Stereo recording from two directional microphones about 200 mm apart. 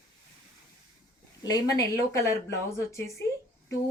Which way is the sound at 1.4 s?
20° left (ahead or behind).